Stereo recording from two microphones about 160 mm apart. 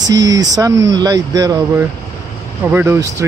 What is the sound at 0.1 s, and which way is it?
Speech, 25° right (ahead or behind).